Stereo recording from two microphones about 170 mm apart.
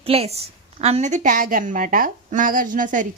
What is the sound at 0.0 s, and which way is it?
A woman's voice, 35° right (ahead or behind).